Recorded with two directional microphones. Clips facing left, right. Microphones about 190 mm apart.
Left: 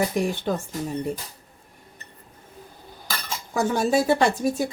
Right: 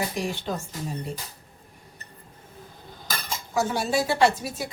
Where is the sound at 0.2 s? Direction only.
50° left (ahead or behind).